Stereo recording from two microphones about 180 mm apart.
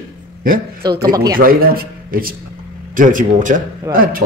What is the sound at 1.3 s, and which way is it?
A man's voice, 55° right (ahead or behind).